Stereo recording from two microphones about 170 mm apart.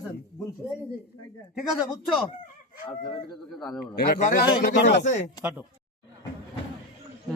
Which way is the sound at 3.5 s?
Centre (ahead or behind).